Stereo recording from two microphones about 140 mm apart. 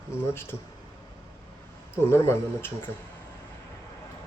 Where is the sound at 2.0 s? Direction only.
20° left (ahead or behind).